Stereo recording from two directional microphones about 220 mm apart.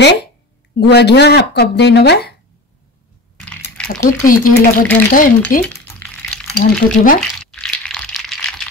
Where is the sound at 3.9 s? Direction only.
10° left (ahead or behind).